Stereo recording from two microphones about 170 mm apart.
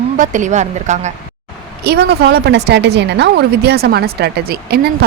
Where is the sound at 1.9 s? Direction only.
75° right (ahead or behind).